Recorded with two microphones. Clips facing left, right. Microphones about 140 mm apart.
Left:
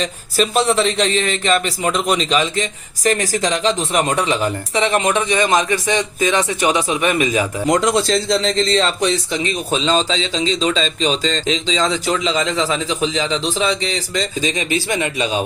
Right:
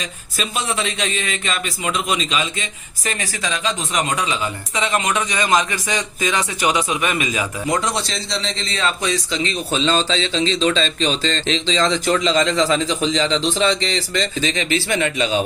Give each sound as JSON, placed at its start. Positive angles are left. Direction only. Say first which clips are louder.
{"t": 0.7, "sound": "speech", "louder": "left 7 dB", "side_deg": 35}
{"t": 7.7, "sound": "speech", "louder": "left 7 dB", "side_deg": 45}
{"t": 9.8, "sound": "speech", "louder": "even", "side_deg": 10}